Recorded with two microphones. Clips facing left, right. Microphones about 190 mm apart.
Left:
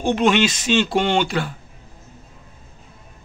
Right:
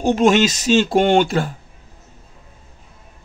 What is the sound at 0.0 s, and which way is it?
Speech, 40° right (ahead or behind).